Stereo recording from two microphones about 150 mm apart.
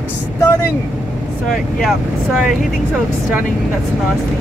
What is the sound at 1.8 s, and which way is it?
Speech, centre (ahead or behind).